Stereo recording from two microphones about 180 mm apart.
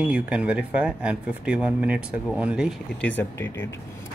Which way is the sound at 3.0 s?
10° left (ahead or behind).